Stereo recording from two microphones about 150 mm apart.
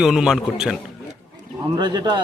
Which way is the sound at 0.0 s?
5° right (ahead or behind).